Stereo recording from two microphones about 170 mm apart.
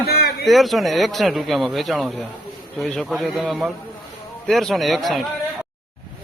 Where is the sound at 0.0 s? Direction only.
65° left (ahead or behind).